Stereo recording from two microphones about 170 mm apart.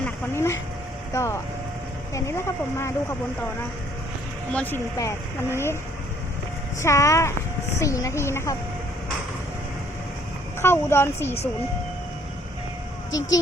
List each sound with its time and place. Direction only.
0.0 s a sound: 15° left (ahead or behind)
1.1 s speech: 15° left (ahead or behind)
4.5 s speech: 10° left (ahead or behind)
6.8 s speech: 15° left (ahead or behind)
10.6 s speech: 15° left (ahead or behind)
13.1 s speech: 20° left (ahead or behind)